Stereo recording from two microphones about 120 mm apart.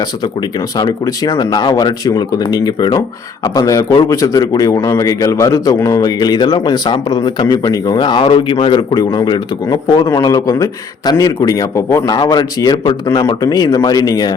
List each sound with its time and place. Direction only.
0.8 s a man's voice: 30° left (ahead or behind)